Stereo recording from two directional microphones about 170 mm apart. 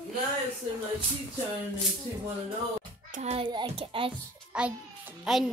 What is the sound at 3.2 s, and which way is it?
Speech, 35° right (ahead or behind).